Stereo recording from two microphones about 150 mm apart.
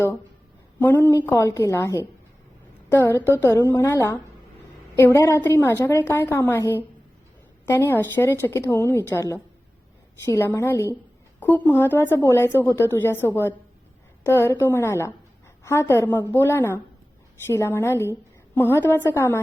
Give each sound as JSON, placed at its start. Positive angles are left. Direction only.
{"t": 0.8, "sound": "a woman's voice", "side_deg": 15}